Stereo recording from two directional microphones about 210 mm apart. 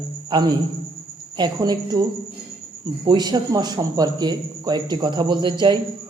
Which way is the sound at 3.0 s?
20° right (ahead or behind).